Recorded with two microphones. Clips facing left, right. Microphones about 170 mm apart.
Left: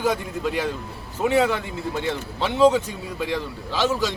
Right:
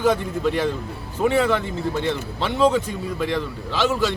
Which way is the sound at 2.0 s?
10° left (ahead or behind).